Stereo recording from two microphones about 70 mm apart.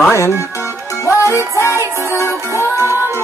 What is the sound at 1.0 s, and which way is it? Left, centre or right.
Music, left.